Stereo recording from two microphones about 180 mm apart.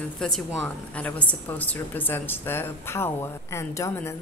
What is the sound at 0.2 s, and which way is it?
A woman's voice, centre (ahead or behind).